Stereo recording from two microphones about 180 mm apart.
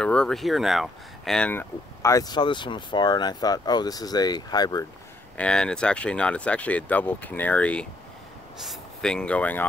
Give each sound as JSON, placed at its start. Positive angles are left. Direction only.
{"t": 0.0, "sound": "speech", "side_deg": 5}
{"t": 5.4, "sound": "speech", "side_deg": 5}